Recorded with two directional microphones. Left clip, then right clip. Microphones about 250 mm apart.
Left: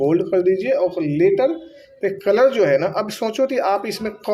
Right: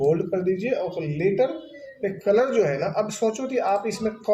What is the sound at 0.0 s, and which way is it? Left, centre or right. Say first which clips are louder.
Speech: left 5 dB; left.